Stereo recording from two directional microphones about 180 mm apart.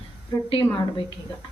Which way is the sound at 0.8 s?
25° left (ahead or behind).